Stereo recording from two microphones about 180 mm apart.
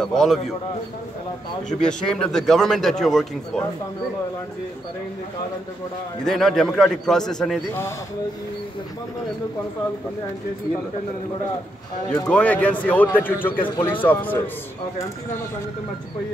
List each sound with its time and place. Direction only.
0.0 s speech: centre (ahead or behind)
2.0 s speech: 5° left (ahead or behind)
6.2 s speech: centre (ahead or behind)
12.3 s a man's voice: 10° left (ahead or behind)